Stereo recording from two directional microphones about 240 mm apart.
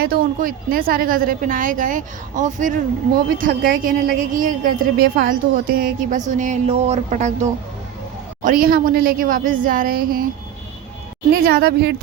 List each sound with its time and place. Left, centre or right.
0.0 s a woman's voice: right
8.4 s a woman's voice: right
11.4 s a woman's voice: right